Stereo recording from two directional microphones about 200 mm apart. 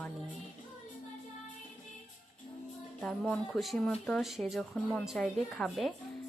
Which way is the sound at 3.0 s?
5° left (ahead or behind).